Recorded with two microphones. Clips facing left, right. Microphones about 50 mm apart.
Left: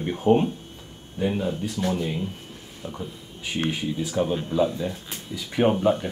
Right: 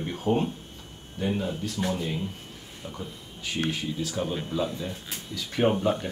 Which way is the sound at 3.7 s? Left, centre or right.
Centre.